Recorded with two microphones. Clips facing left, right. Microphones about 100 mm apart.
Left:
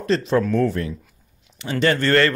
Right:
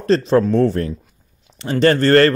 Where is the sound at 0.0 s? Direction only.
35° right (ahead or behind).